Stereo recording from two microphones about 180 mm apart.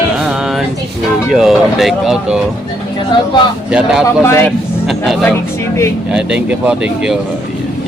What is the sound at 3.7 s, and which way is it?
Speech, 5° right (ahead or behind).